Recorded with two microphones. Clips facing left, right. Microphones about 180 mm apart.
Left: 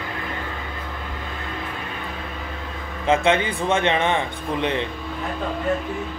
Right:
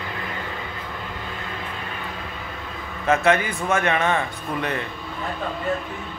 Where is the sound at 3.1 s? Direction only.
25° left (ahead or behind).